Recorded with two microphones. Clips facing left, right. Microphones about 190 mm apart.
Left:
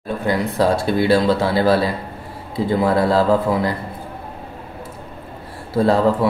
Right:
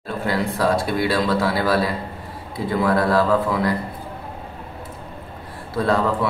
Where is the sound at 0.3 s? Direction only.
25° left (ahead or behind).